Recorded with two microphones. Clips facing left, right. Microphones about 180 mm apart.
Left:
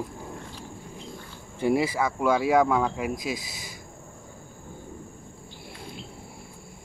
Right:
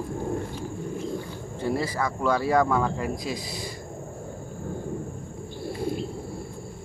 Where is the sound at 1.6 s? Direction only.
15° left (ahead or behind).